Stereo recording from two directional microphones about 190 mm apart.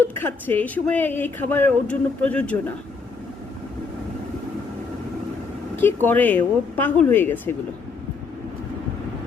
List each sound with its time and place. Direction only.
0.0 s speech: 10° left (ahead or behind)
5.7 s speech: 10° left (ahead or behind)